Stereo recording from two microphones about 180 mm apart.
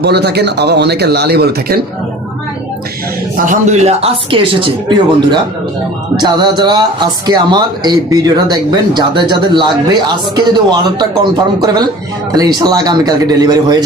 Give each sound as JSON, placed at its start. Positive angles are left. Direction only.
{"t": 0.0, "sound": "speech", "side_deg": -65}
{"t": 3.3, "sound": "speech", "side_deg": -45}